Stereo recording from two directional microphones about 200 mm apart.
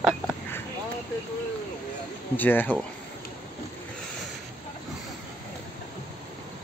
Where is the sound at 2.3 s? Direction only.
10° left (ahead or behind).